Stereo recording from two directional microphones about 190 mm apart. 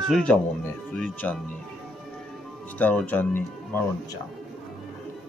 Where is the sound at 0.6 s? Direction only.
10° left (ahead or behind).